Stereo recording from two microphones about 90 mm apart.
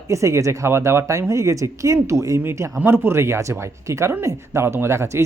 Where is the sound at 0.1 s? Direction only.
35° right (ahead or behind).